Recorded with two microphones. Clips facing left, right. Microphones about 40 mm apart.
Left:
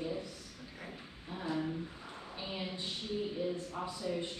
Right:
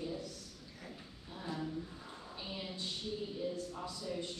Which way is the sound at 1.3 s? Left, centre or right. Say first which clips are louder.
Left 4 dB; left.